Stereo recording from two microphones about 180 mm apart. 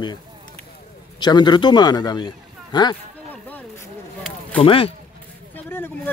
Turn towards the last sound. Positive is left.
turn(degrees=10)  # may be behind; listen again after turning